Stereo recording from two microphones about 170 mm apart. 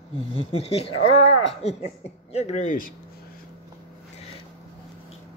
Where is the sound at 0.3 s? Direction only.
35° left (ahead or behind).